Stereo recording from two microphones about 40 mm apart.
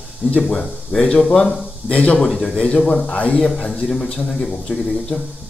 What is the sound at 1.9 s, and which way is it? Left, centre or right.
Speech, left.